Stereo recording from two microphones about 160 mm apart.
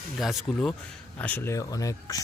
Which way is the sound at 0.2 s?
Centre (ahead or behind).